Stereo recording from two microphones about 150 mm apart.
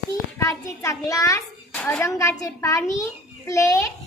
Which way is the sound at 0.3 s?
20° left (ahead or behind).